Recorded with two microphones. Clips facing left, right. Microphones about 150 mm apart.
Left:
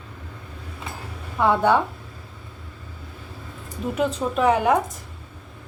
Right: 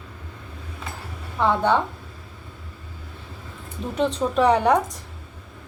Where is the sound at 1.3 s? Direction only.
10° left (ahead or behind).